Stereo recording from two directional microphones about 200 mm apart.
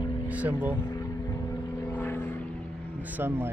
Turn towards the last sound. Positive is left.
turn(degrees=-10)  # may be behind; listen again after turning